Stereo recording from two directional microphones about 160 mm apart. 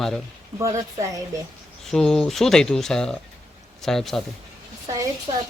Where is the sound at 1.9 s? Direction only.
Centre (ahead or behind).